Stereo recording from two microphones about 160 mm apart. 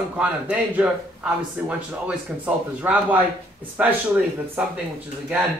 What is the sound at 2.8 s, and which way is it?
Speech, 10° right (ahead or behind).